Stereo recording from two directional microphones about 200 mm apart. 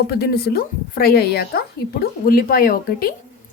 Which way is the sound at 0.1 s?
55° left (ahead or behind).